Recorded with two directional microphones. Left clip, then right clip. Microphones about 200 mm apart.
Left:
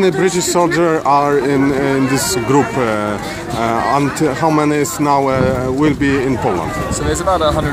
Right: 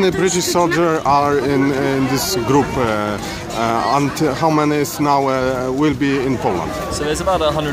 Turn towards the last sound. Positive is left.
turn(degrees=-5)  # may be behind; listen again after turning